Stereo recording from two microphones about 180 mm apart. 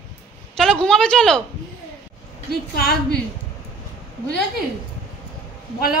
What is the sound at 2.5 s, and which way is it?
Speech, 60° left (ahead or behind).